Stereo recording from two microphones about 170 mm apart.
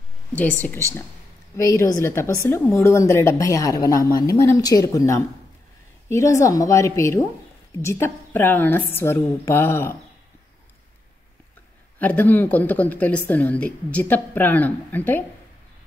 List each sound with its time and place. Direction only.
0.3 s a woman's voice: 10° left (ahead or behind)
12.0 s a woman's voice: 10° left (ahead or behind)